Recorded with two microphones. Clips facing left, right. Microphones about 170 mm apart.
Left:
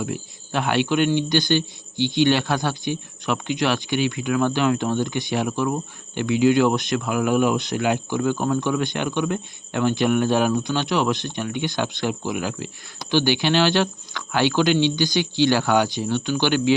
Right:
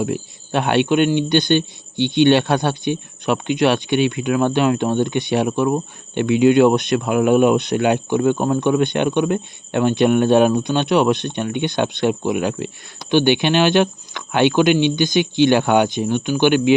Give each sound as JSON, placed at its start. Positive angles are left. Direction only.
{"t": 0.0, "sound": "speech", "side_deg": -25}